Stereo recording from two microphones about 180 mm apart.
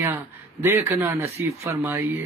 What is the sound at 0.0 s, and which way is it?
Speech, 10° right (ahead or behind).